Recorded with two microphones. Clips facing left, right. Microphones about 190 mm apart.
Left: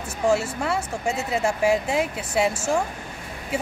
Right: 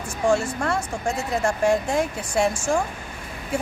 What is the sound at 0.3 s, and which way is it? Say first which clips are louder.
Speech: right 1 dB; 5° left (ahead or behind).